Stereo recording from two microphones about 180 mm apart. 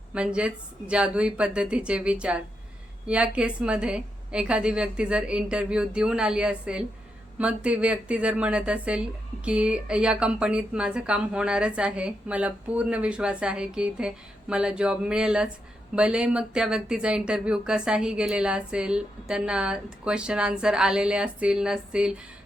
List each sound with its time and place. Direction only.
0.1 s speech: 5° right (ahead or behind)